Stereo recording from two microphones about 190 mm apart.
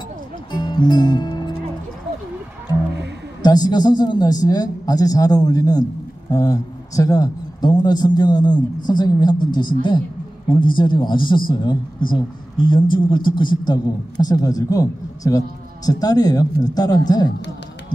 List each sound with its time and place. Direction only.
0.5 s music: 20° left (ahead or behind)
3.4 s a man's voice: 20° left (ahead or behind)